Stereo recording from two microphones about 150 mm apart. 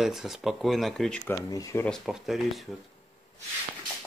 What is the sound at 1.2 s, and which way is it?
Speech, 20° left (ahead or behind).